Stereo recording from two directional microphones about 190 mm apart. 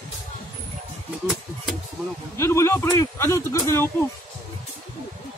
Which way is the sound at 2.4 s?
15° left (ahead or behind).